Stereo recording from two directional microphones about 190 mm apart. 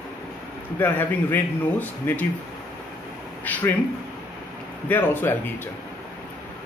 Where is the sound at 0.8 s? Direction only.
10° left (ahead or behind).